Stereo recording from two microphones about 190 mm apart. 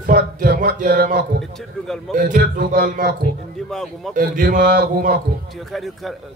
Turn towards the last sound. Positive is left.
turn(degrees=0)  # may be behind; listen again after turning